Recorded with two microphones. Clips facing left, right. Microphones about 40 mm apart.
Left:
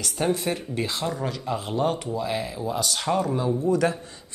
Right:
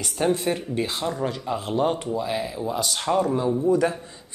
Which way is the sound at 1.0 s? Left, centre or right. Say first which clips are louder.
Right 2 dB; centre.